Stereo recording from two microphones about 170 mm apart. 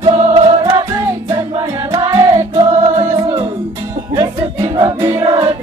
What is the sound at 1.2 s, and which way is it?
Music, 15° right (ahead or behind).